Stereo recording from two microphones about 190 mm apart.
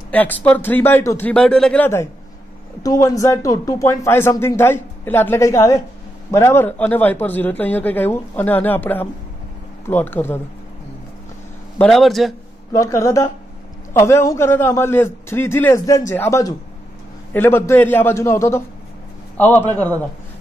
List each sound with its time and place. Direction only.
0.1 s speech: 10° left (ahead or behind)
11.8 s a man's voice: centre (ahead or behind)
12.7 s a man's voice: 15° left (ahead or behind)